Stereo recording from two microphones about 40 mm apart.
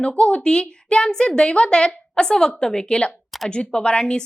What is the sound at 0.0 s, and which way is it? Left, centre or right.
A woman's voice, left.